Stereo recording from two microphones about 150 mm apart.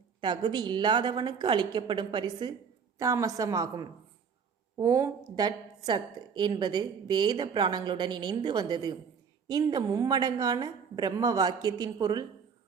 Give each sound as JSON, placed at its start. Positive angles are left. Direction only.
{"t": 0.2, "sound": "a woman's voice", "side_deg": -30}
{"t": 3.0, "sound": "a woman's voice", "side_deg": -20}